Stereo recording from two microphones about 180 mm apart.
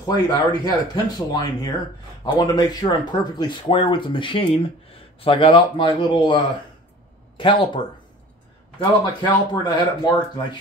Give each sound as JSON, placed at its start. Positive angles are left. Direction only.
{"t": 0.0, "sound": "speech", "side_deg": 25}